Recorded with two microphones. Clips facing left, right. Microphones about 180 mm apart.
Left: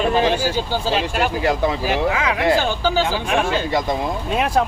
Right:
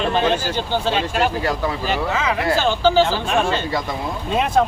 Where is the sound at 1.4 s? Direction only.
15° left (ahead or behind).